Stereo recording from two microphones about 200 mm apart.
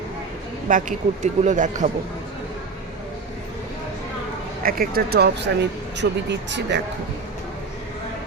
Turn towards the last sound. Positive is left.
turn(degrees=-60)  # may be behind; listen again after turning